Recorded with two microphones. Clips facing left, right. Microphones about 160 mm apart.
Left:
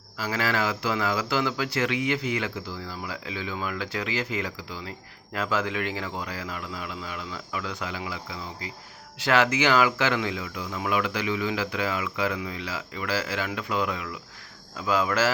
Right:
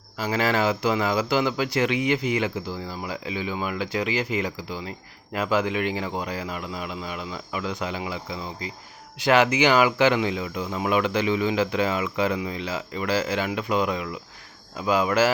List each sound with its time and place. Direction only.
0.2 s speech: 20° right (ahead or behind)